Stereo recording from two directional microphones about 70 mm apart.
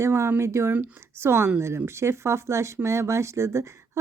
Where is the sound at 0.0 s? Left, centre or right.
Right.